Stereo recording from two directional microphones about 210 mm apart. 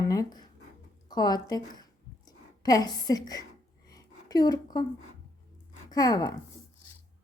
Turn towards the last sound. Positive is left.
turn(degrees=15)  # may be behind; listen again after turning